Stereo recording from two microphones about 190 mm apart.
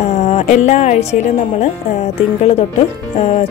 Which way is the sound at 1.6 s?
35° left (ahead or behind).